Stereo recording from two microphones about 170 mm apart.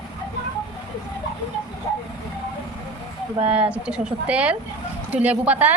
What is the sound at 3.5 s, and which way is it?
Speech, 5° right (ahead or behind).